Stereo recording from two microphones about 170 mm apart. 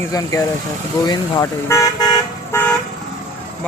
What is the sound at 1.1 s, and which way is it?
Toot, 20° left (ahead or behind).